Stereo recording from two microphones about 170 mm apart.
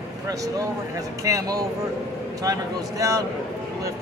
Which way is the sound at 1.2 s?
20° right (ahead or behind).